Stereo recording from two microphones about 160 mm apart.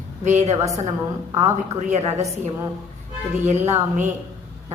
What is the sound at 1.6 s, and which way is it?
Speech, 45° right (ahead or behind).